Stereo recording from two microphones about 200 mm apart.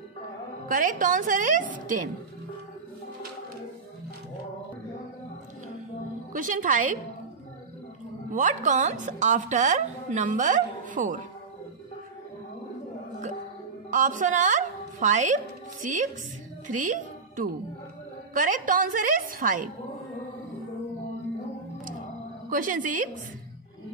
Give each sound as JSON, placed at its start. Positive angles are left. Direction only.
{"t": 0.7, "sound": "a woman's voice", "side_deg": -45}
{"t": 6.3, "sound": "a woman's voice", "side_deg": -40}
{"t": 8.3, "sound": "a woman's voice", "side_deg": -40}
{"t": 13.8, "sound": "a woman's voice", "side_deg": -40}
{"t": 22.5, "sound": "a woman's voice", "side_deg": -40}